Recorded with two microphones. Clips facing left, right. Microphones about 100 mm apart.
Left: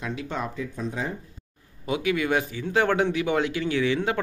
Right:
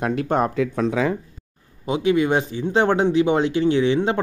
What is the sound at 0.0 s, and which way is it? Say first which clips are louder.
Speech: right 10 dB; 55° right (ahead or behind).